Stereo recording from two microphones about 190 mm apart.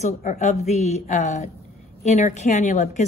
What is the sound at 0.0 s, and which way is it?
Speech, 40° left (ahead or behind).